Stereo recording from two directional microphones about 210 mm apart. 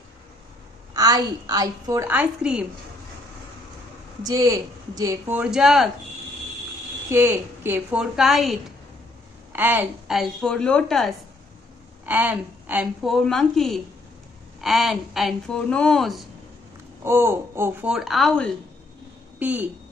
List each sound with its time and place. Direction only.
0.9 s a woman's voice: 20° right (ahead or behind)
4.2 s a woman's voice: 15° right (ahead or behind)
7.1 s a woman's voice: 10° right (ahead or behind)
17.0 s a woman's voice: 10° right (ahead or behind)
19.3 s a woman's voice: 10° right (ahead or behind)